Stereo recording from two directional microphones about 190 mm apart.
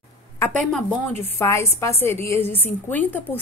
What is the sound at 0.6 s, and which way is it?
A woman's voice, 5° left (ahead or behind).